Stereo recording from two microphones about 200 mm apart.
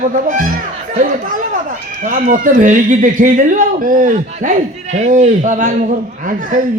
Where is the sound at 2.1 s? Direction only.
40° right (ahead or behind).